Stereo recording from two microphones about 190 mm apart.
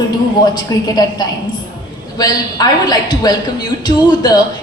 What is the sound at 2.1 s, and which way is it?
A woman's voice, 20° left (ahead or behind).